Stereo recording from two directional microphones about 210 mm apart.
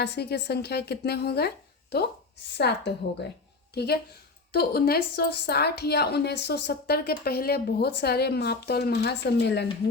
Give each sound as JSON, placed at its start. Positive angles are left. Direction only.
{"t": 0.0, "sound": "a woman's voice", "side_deg": 50}
{"t": 4.5, "sound": "a woman's voice", "side_deg": 45}